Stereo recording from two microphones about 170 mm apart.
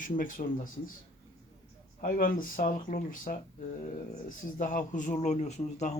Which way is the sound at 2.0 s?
55° left (ahead or behind).